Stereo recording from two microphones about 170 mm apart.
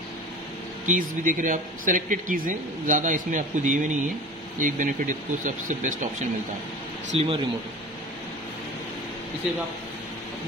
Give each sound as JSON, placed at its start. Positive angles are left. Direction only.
{"t": 0.8, "sound": "speech", "side_deg": -50}
{"t": 7.2, "sound": "speech", "side_deg": -30}